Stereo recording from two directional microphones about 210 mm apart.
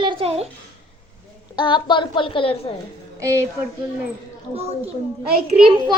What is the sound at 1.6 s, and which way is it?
A woman's voice, 20° left (ahead or behind).